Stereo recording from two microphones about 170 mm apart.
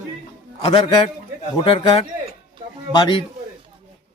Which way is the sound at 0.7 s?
30° left (ahead or behind).